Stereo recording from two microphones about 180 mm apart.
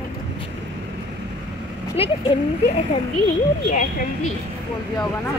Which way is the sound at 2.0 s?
30° left (ahead or behind).